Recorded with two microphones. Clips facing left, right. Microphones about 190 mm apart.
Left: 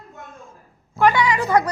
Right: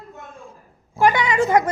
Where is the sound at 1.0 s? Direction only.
15° right (ahead or behind).